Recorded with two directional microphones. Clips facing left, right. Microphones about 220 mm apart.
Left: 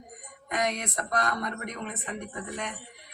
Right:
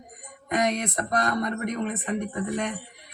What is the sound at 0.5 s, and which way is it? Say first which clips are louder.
Speech: right 5 dB; 40° right (ahead or behind).